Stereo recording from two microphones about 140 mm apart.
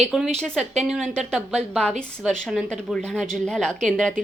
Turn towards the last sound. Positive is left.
turn(degrees=0)  # may be behind; listen again after turning